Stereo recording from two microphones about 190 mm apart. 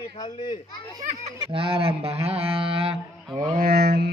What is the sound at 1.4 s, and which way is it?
Honk, 30° right (ahead or behind).